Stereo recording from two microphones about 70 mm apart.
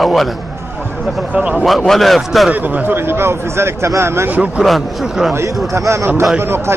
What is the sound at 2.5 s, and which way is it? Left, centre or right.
Speech, right.